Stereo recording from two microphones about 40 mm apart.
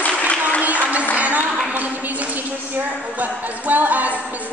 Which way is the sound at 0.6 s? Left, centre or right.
Right.